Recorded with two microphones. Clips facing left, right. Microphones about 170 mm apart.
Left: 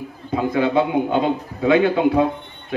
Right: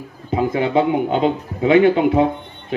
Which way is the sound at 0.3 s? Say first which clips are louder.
Right 1 dB; 20° right (ahead or behind).